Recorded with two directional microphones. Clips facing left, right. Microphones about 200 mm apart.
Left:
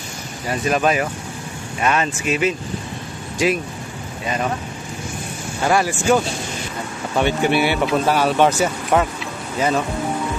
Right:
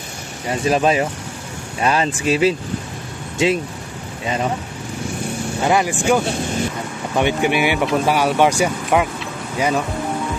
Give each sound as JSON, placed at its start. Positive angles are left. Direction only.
{"t": 0.5, "sound": "speech", "side_deg": -30}
{"t": 5.7, "sound": "speech", "side_deg": -15}
{"t": 7.2, "sound": "speech", "side_deg": -15}